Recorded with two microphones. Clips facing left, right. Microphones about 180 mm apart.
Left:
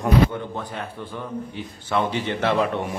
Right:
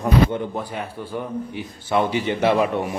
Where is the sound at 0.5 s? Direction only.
10° right (ahead or behind).